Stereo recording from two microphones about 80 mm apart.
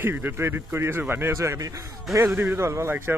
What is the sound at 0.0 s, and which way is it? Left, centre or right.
A man's voice, right.